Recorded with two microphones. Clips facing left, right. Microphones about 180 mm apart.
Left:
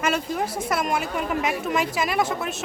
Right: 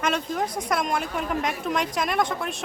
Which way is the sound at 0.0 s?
5° left (ahead or behind).